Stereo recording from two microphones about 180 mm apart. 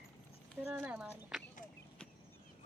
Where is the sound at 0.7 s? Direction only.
10° right (ahead or behind).